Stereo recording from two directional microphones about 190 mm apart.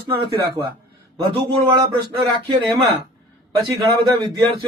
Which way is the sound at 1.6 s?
20° right (ahead or behind).